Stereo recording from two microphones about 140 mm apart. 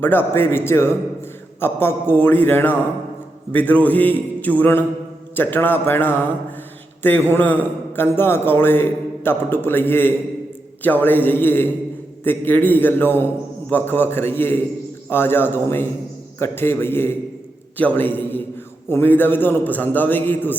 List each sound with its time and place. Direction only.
0.0 s a man's voice: 15° left (ahead or behind)